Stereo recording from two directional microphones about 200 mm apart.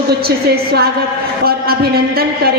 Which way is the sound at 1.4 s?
50° right (ahead or behind).